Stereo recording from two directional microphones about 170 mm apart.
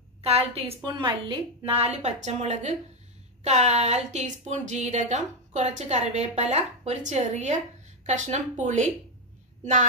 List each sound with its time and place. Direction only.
0.2 s a woman's voice: 35° right (ahead or behind)